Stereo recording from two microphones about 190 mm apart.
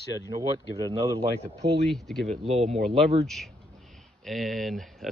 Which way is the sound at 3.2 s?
Centre (ahead or behind).